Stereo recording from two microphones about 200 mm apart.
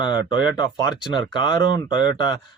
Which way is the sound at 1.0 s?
20° left (ahead or behind).